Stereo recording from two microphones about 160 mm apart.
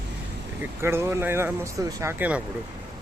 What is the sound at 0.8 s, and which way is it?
Speech, 15° right (ahead or behind).